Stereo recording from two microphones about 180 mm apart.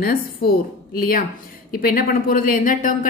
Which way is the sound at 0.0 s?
55° left (ahead or behind).